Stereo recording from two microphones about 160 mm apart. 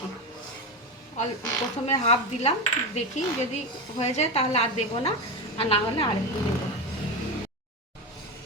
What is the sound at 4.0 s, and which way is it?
A woman's voice, 45° left (ahead or behind).